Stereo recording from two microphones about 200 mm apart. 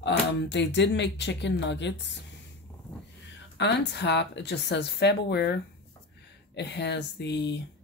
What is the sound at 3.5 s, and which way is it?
Speech, 60° left (ahead or behind).